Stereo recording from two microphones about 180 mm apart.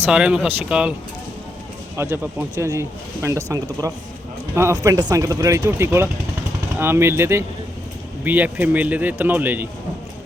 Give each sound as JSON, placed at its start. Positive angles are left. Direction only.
{"t": 0.0, "sound": "speech", "side_deg": -5}
{"t": 2.0, "sound": "speech", "side_deg": -15}